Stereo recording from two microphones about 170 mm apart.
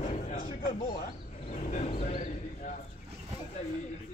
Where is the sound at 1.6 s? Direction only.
40° left (ahead or behind).